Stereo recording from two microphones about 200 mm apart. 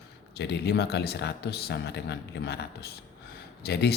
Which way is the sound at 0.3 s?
55° left (ahead or behind).